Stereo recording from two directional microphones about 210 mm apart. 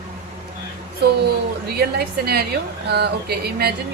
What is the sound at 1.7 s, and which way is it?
Speech, 50° right (ahead or behind).